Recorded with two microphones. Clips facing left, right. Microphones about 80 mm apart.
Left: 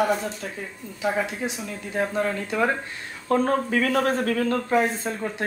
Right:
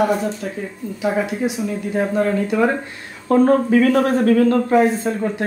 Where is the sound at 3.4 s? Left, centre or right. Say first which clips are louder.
Right 9 dB; right.